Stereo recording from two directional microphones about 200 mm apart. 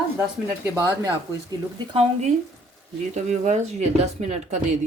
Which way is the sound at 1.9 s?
30° right (ahead or behind).